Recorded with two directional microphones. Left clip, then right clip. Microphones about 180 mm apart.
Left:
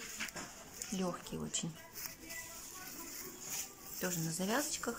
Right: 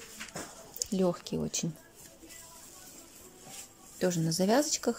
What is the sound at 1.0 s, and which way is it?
Speech, 20° right (ahead or behind).